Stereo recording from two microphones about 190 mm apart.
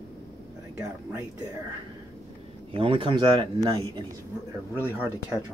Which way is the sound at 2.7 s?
30° right (ahead or behind).